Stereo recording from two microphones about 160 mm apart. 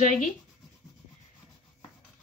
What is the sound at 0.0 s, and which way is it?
Speech, 55° left (ahead or behind).